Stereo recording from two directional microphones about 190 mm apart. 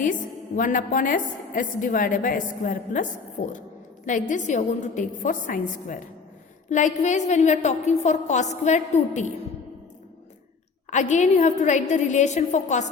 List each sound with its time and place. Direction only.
0.0 s a woman's voice: 45° left (ahead or behind)
10.9 s a woman's voice: 40° left (ahead or behind)